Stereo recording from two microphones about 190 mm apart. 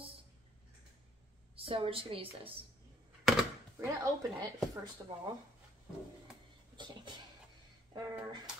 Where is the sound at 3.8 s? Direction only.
15° right (ahead or behind).